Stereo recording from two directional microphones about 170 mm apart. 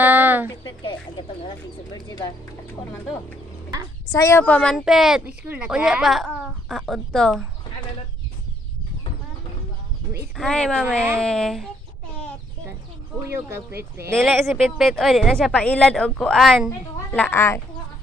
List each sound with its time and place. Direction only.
0.0 s a sound: 10° right (ahead or behind)
2.0 s speech: 20° left (ahead or behind)
4.1 s a woman's voice: 15° left (ahead or behind)
10.3 s a woman's voice: 5° left (ahead or behind)
10.8 s speech: 10° right (ahead or behind)
11.1 s a woman's voice: 5° left (ahead or behind)
13.3 s speech: 15° right (ahead or behind)
14.3 s a woman's voice: centre (ahead or behind)
17.1 s a child's voice: 10° left (ahead or behind)